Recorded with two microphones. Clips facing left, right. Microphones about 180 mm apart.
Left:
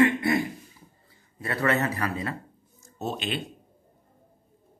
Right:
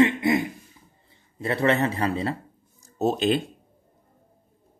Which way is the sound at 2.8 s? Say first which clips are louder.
Right 9 dB; 40° right (ahead or behind).